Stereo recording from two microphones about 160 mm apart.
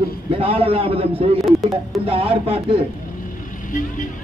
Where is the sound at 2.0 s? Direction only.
35° right (ahead or behind).